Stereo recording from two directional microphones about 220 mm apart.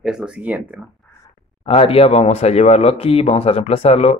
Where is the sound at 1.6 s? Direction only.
25° left (ahead or behind).